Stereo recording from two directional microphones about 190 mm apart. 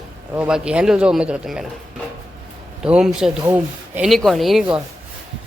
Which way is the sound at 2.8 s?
5° right (ahead or behind).